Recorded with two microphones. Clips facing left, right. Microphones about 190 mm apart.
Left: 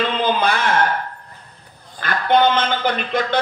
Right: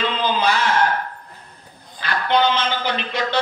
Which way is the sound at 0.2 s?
55° left (ahead or behind).